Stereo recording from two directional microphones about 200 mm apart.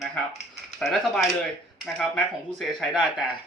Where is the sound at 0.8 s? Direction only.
Centre (ahead or behind).